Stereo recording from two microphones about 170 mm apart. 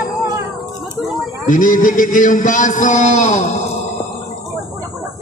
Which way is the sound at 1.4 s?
50° left (ahead or behind).